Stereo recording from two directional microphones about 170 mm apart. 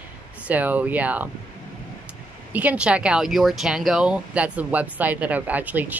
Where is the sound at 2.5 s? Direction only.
10° right (ahead or behind).